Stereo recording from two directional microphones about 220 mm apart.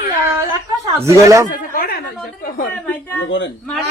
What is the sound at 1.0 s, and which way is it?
Speech, 15° right (ahead or behind).